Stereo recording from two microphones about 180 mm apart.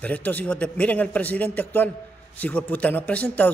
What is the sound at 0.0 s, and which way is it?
A man's voice, 10° left (ahead or behind).